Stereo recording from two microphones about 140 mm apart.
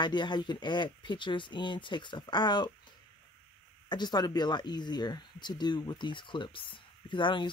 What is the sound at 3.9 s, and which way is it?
Speech, 30° left (ahead or behind).